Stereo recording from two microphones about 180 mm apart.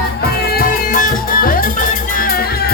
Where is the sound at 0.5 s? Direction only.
50° left (ahead or behind).